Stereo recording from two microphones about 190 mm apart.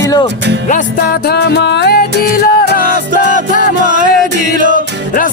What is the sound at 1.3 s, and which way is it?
Music, 60° left (ahead or behind).